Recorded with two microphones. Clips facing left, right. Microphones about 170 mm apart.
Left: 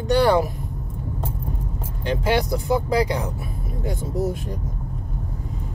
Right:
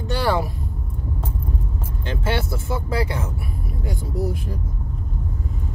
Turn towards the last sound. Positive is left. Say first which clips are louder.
# left 1 dB
turn(degrees=20)  # may be behind; listen again after turning